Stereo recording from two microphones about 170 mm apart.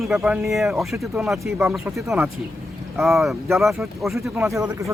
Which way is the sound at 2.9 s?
Centre (ahead or behind).